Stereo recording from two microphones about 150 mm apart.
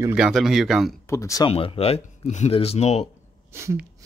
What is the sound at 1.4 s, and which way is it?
Speech, 35° left (ahead or behind).